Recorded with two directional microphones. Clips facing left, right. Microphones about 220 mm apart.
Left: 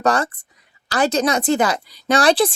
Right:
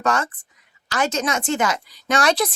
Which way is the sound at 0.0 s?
35° left (ahead or behind).